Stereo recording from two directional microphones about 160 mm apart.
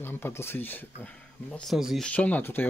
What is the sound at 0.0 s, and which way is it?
Speech, 15° left (ahead or behind).